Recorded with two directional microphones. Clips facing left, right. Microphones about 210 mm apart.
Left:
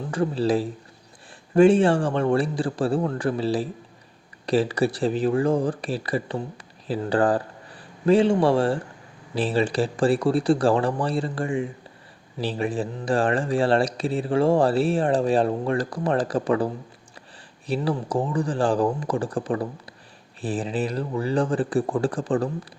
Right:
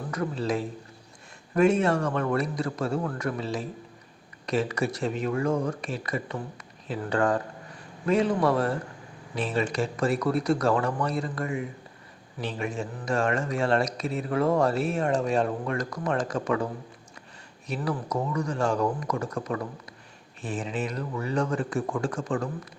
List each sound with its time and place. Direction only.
0.1 s speech: 30° left (ahead or behind)
17.7 s speech: 30° left (ahead or behind)